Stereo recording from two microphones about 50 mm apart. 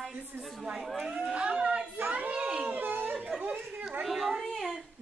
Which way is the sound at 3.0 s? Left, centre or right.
Centre.